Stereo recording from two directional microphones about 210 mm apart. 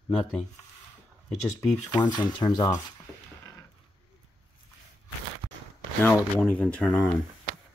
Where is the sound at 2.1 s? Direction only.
20° left (ahead or behind).